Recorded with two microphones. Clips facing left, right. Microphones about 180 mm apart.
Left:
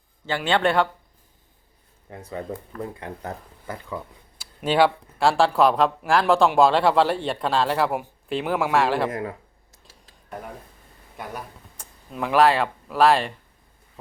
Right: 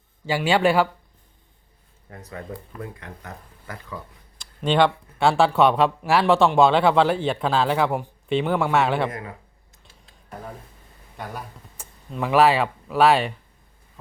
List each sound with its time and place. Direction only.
0.3 s speech: 10° right (ahead or behind)
2.0 s speech: 25° left (ahead or behind)
4.4 s speech: 5° left (ahead or behind)
11.8 s a sound: 10° right (ahead or behind)
12.1 s speech: centre (ahead or behind)